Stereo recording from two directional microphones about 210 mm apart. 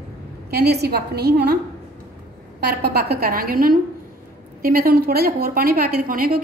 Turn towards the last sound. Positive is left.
turn(degrees=-45)  # may be behind; listen again after turning